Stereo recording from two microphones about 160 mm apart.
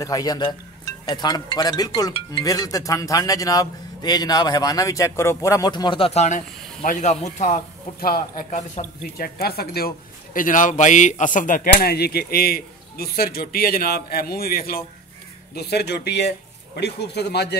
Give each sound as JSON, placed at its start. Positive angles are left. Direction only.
{"t": 0.0, "sound": "speech", "side_deg": 25}
{"t": 8.5, "sound": "speech", "side_deg": 45}
{"t": 9.0, "sound": "a man's voice", "side_deg": 75}
{"t": 15.5, "sound": "speech", "side_deg": 90}